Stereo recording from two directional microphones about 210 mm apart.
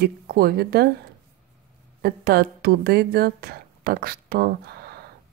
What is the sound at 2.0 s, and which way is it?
A woman's voice, 50° right (ahead or behind).